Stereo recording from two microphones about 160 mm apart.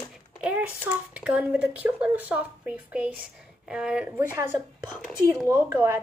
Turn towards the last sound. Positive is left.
turn(degrees=-20)  # may be behind; listen again after turning